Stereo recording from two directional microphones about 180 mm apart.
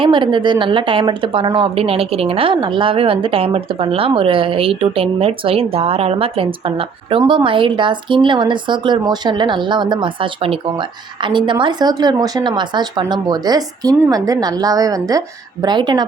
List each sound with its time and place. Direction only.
0.0 s speech: 25° right (ahead or behind)